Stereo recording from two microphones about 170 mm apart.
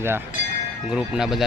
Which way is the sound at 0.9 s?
5° right (ahead or behind).